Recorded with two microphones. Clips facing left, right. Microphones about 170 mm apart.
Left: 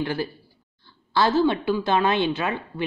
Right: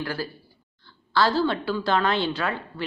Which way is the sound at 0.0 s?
20° left (ahead or behind).